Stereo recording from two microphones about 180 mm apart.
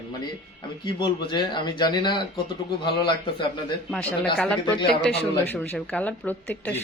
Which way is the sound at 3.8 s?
5° left (ahead or behind).